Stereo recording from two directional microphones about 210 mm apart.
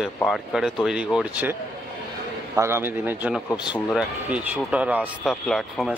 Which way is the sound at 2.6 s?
10° right (ahead or behind).